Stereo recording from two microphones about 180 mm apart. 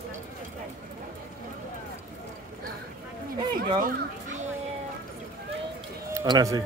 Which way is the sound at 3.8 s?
45° right (ahead or behind).